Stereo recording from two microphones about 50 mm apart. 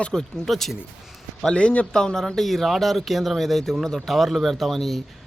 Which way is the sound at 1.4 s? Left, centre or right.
Centre.